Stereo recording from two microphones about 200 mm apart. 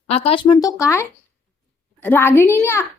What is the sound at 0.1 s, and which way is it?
A woman's voice, 30° left (ahead or behind).